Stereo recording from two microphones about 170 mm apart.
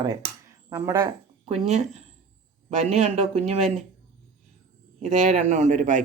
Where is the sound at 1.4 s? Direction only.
40° right (ahead or behind).